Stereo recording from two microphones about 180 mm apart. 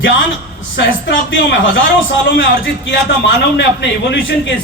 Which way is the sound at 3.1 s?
70° left (ahead or behind).